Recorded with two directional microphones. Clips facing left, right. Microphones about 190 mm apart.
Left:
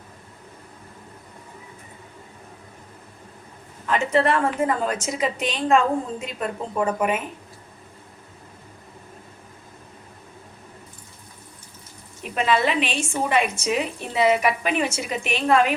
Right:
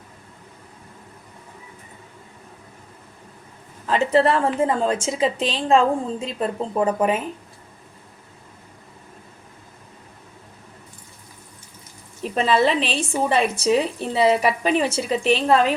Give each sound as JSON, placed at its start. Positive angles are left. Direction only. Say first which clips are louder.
{"t": 3.8, "sound": "a woman's voice", "louder": "right 3 dB", "side_deg": -30}
{"t": 12.2, "sound": "a woman's voice", "louder": "right 3 dB", "side_deg": -35}